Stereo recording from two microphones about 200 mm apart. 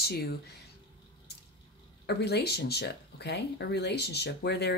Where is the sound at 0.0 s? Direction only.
50° left (ahead or behind).